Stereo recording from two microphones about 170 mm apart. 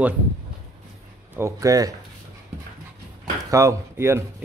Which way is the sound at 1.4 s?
20° right (ahead or behind).